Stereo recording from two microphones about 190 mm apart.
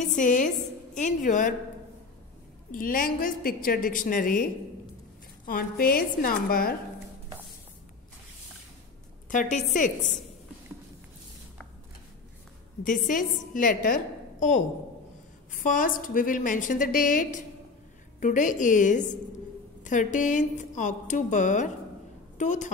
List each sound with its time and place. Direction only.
0.0 s a woman's voice: 40° left (ahead or behind)
2.7 s a woman's voice: 45° left (ahead or behind)
9.3 s a woman's voice: 40° left (ahead or behind)
12.8 s a woman's voice: 45° left (ahead or behind)
15.5 s a woman's voice: 45° left (ahead or behind)